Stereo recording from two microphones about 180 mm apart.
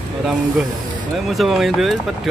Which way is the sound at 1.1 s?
Centre (ahead or behind).